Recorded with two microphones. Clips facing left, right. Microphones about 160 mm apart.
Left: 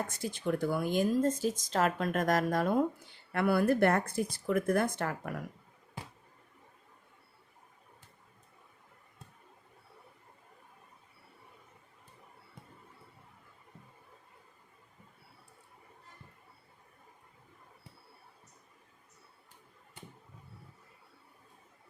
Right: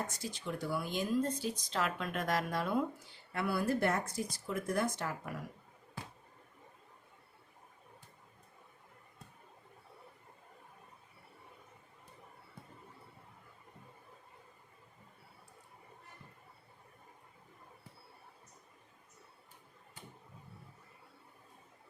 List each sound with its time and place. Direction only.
0.1 s speech: 55° left (ahead or behind)
3.3 s speech: 60° left (ahead or behind)